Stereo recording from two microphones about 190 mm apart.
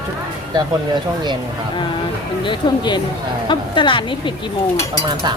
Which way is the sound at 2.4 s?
25° left (ahead or behind).